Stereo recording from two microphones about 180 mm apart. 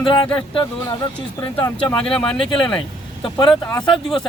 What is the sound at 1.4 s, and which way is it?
Speech, 25° left (ahead or behind).